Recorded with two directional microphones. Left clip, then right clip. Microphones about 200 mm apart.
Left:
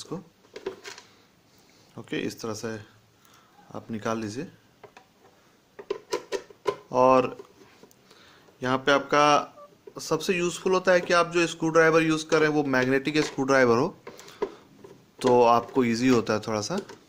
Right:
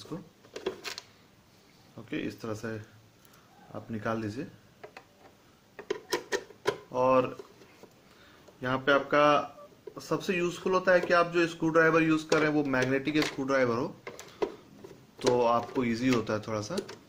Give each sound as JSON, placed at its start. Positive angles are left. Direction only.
{"t": 2.0, "sound": "speech", "side_deg": 40}
{"t": 5.7, "sound": "a sound", "side_deg": 0}
{"t": 6.9, "sound": "speech", "side_deg": 45}
{"t": 8.6, "sound": "speech", "side_deg": 40}
{"t": 15.4, "sound": "speech", "side_deg": 45}